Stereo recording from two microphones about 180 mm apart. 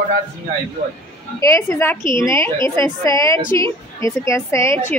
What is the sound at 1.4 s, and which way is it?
A woman's voice, 15° left (ahead or behind).